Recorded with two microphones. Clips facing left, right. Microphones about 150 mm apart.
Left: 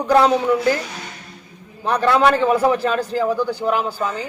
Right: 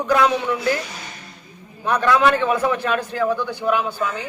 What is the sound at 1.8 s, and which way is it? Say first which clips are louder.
A man's voice: left 1 dB; 30° left (ahead or behind).